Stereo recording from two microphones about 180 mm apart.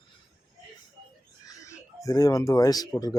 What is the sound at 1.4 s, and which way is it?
Speech, 15° left (ahead or behind).